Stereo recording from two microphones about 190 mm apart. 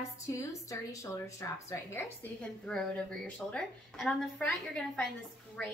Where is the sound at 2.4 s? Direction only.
5° left (ahead or behind).